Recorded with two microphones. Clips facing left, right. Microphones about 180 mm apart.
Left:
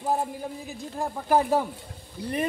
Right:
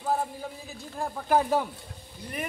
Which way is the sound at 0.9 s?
10° left (ahead or behind).